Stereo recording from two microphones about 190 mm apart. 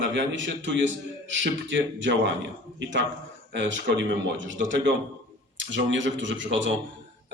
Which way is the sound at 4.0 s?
75° right (ahead or behind).